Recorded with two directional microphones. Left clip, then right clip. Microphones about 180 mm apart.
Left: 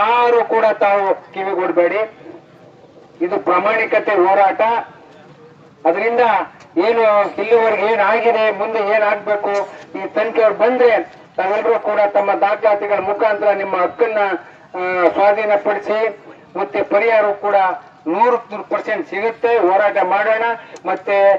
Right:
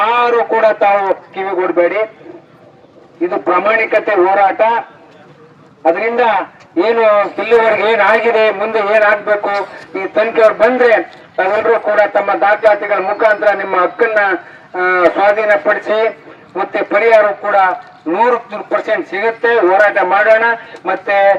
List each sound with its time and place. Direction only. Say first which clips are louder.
0.3 s a man's voice: right 2 dB; 50° left (ahead or behind)
3.2 s a man's voice: right 2 dB; 50° left (ahead or behind)
5.8 s a man's voice: right 2 dB; 50° left (ahead or behind)
10.6 s a man's voice: right 3 dB; 50° left (ahead or behind)